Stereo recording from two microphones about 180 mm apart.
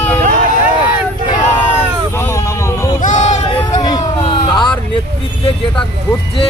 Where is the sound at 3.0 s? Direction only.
45° left (ahead or behind).